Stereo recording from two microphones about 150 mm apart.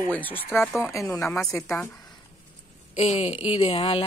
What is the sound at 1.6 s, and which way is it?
Speech, centre (ahead or behind).